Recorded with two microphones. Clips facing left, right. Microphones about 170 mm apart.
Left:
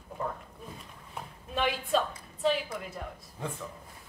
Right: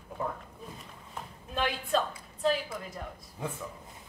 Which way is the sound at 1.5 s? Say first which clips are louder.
Left 1 dB; 5° left (ahead or behind).